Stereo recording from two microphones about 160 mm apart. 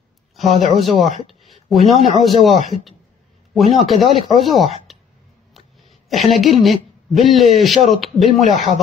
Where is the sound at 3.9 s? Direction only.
35° left (ahead or behind).